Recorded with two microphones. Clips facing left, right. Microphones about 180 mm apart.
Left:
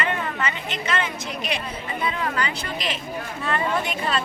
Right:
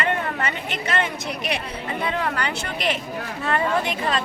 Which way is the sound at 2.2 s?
65° right (ahead or behind).